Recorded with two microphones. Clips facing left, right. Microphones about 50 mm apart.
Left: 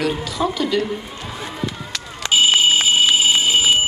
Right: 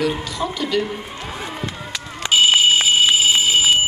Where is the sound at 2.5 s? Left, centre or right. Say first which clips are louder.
Right 1 dB; centre.